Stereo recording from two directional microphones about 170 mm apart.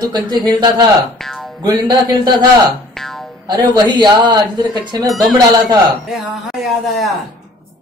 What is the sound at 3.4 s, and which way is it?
Speech, 25° right (ahead or behind).